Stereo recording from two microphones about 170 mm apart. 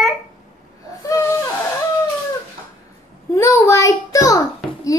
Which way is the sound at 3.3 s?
20° left (ahead or behind).